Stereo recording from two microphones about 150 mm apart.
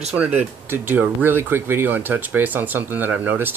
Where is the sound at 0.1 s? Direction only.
10° right (ahead or behind).